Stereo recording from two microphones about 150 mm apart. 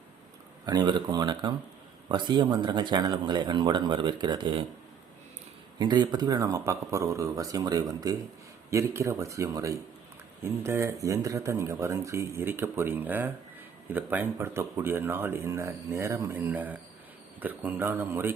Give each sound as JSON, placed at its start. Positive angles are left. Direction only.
{"t": 0.6, "sound": "speech", "side_deg": -25}
{"t": 5.8, "sound": "speech", "side_deg": -30}